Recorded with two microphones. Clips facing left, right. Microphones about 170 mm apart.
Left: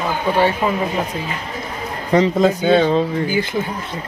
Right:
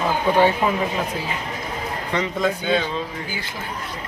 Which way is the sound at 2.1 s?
35° left (ahead or behind).